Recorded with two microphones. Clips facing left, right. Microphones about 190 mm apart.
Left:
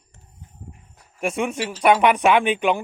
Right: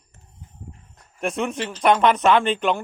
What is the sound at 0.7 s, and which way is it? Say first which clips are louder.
Speech: even; 10° left (ahead or behind).